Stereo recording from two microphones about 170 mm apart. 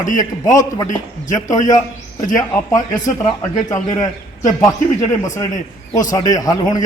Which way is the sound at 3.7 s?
20° left (ahead or behind).